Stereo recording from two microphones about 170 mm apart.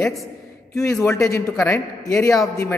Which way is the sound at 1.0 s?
15° left (ahead or behind).